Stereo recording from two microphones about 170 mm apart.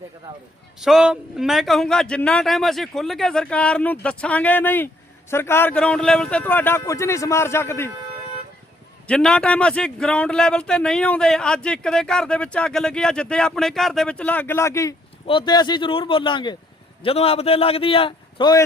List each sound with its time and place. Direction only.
0.8 s a man's voice: centre (ahead or behind); by 7.9 s 15° left (ahead or behind)
9.0 s a man's voice: 5° left (ahead or behind); by 18.6 s 25° left (ahead or behind)